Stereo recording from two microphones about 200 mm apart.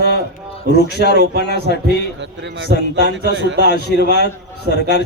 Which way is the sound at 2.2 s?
65° right (ahead or behind).